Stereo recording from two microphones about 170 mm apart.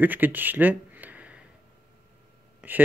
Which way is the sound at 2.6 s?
10° right (ahead or behind).